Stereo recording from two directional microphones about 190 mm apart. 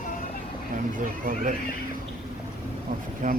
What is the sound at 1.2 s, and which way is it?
Speech, 45° right (ahead or behind).